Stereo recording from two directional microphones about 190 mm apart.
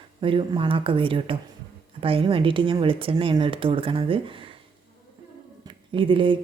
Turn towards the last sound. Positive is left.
turn(degrees=-25)  # may be behind; listen again after turning